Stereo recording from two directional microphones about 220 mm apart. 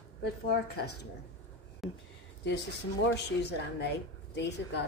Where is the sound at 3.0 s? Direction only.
50° left (ahead or behind).